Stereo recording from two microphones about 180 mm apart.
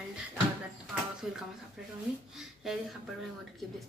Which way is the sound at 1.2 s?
5° right (ahead or behind).